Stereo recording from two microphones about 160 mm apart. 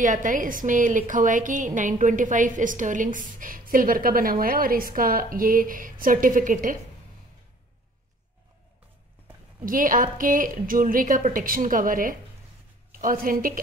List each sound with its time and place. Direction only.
0.0 s a woman's voice: 55° right (ahead or behind)
9.7 s a woman's voice: 60° right (ahead or behind)